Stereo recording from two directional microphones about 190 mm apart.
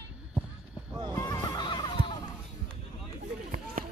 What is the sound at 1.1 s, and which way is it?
Music, 15° left (ahead or behind).